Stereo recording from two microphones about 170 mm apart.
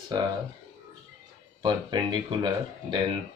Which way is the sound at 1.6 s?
25° right (ahead or behind).